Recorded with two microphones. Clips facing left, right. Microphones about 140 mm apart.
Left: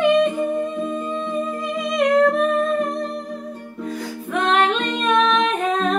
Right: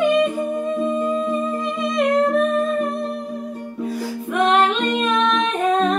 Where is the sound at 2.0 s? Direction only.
Centre (ahead or behind).